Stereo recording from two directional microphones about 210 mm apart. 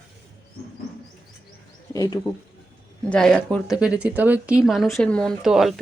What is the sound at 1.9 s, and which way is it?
Speech, 15° left (ahead or behind).